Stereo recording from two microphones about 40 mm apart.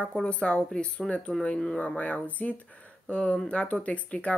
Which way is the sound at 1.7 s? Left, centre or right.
Left.